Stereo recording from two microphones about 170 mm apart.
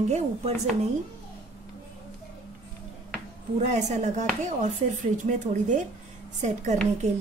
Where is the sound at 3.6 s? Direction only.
40° right (ahead or behind).